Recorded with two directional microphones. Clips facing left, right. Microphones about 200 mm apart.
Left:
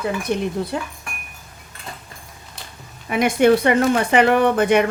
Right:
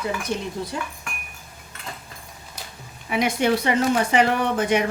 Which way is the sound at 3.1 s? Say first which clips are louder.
Left 6 dB; 50° left (ahead or behind).